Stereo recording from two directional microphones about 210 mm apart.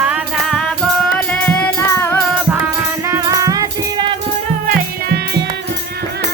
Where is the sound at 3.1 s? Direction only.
15° right (ahead or behind).